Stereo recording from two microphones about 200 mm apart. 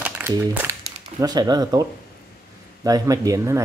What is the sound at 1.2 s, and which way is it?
Speech, 20° right (ahead or behind).